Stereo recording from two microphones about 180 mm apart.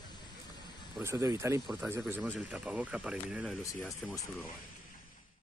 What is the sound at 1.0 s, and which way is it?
Speech, 15° right (ahead or behind).